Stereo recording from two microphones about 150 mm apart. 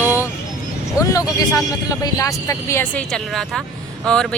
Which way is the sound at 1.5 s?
20° left (ahead or behind).